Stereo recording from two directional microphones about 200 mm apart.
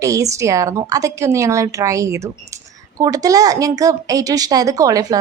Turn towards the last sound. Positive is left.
turn(degrees=-15)  # may be behind; listen again after turning